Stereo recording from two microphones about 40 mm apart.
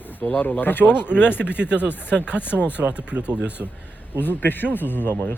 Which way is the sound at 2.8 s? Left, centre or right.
Right.